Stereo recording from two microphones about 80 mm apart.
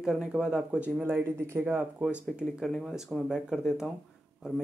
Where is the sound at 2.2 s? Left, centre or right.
Centre.